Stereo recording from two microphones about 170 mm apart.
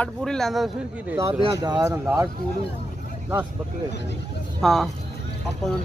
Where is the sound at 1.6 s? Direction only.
25° right (ahead or behind).